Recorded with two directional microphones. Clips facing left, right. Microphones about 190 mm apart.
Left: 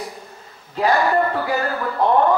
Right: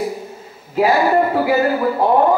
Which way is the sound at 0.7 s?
5° right (ahead or behind).